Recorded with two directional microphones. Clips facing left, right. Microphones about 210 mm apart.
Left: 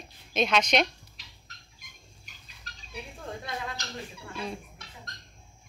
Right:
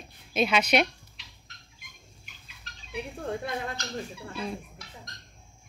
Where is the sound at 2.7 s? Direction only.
40° left (ahead or behind).